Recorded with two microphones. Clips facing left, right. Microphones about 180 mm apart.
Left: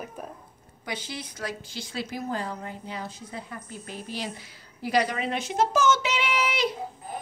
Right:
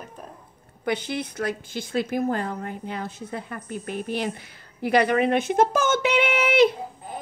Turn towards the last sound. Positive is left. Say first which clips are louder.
# right 8 dB
turn(degrees=-60)  # may be behind; listen again after turning